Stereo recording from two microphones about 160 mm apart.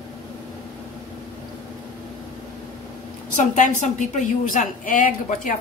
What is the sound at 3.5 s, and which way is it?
A woman's voice, 50° left (ahead or behind).